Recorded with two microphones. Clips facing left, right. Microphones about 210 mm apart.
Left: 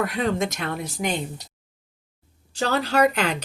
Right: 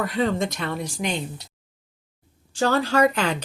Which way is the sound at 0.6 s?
55° left (ahead or behind).